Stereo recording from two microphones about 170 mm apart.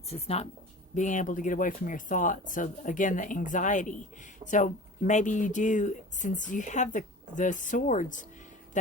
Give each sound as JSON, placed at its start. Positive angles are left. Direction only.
{"t": 0.1, "sound": "speech", "side_deg": 40}